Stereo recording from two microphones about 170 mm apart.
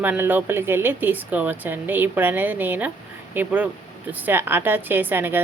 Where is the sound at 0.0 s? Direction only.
10° right (ahead or behind).